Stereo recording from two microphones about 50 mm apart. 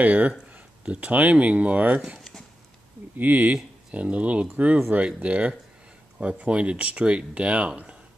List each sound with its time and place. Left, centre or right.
0.0 s speech: right
2.1 s a sound: centre
3.2 s speech: right